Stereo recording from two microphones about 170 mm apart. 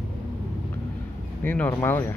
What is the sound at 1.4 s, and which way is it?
Speech, 10° left (ahead or behind).